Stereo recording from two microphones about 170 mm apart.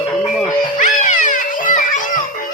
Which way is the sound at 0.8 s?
50° left (ahead or behind).